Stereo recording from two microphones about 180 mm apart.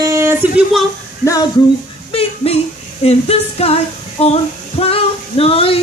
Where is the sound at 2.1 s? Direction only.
35° left (ahead or behind).